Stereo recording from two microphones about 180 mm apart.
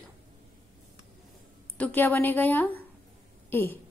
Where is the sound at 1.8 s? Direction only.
10° left (ahead or behind).